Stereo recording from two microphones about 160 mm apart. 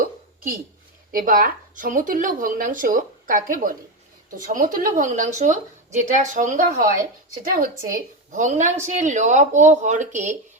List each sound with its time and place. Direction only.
1.1 s speech: 60° right (ahead or behind)